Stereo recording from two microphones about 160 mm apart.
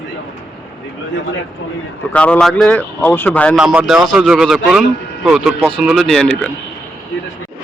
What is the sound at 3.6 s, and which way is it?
A man's voice, 5° right (ahead or behind).